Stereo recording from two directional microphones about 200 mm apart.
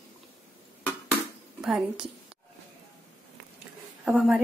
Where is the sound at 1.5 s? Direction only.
Centre (ahead or behind).